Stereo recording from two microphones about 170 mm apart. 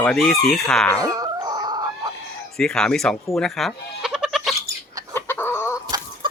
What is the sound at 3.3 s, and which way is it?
Goat, centre (ahead or behind).